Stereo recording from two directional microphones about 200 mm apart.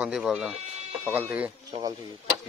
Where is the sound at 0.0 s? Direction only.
Centre (ahead or behind).